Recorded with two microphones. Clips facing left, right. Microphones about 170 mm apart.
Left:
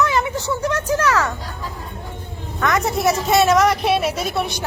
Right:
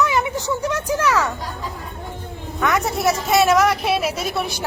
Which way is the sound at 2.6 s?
10° right (ahead or behind).